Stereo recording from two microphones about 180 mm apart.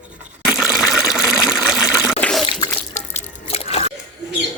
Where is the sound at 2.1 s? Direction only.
5° left (ahead or behind).